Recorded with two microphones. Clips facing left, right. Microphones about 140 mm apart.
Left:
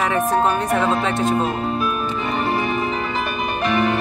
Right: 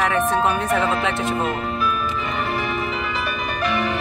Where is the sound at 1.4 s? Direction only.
35° left (ahead or behind).